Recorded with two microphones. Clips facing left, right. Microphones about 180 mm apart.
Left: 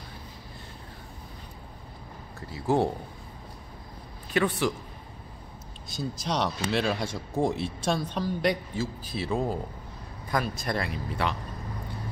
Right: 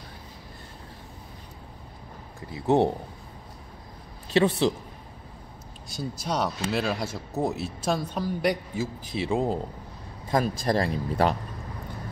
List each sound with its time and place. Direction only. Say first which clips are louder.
2.5 s speech: right 3 dB; 20° right (ahead or behind)
4.3 s speech: right 4 dB; 25° right (ahead or behind)
5.9 s speech: right 1 dB; 5° right (ahead or behind)
10.6 s speech: right 6 dB; 35° right (ahead or behind)